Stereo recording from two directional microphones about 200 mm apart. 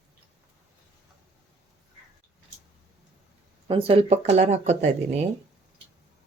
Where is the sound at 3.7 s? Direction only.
30° right (ahead or behind).